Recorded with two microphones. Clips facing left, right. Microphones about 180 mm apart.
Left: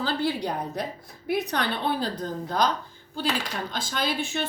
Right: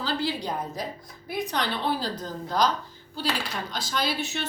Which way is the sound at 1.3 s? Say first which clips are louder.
Left 2 dB; 60° left (ahead or behind).